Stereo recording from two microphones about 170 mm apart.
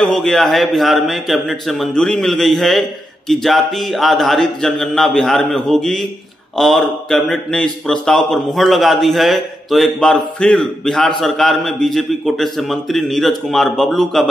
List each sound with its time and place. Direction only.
0.0 s a man's voice: centre (ahead or behind)